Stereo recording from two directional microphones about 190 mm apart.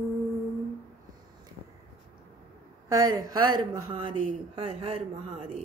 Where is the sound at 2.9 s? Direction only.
20° right (ahead or behind).